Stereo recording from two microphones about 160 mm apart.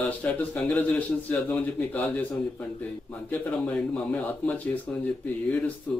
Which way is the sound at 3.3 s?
5° left (ahead or behind).